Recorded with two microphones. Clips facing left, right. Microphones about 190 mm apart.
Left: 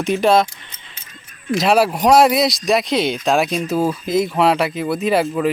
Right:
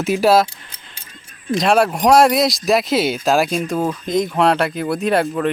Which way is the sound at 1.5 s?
5° left (ahead or behind).